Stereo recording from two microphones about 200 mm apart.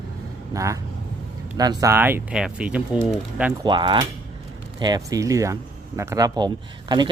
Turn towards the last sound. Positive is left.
turn(degrees=-20)  # may be behind; listen again after turning